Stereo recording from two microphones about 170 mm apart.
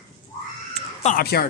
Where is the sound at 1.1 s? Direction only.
65° left (ahead or behind).